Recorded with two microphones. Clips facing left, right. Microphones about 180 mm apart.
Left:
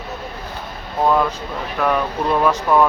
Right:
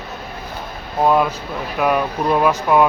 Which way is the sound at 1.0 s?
15° right (ahead or behind).